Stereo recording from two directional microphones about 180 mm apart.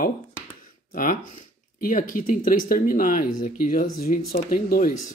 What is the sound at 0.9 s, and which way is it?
Speech, 50° left (ahead or behind).